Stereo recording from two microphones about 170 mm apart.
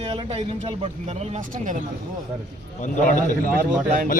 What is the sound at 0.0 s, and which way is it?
Speech, 35° right (ahead or behind).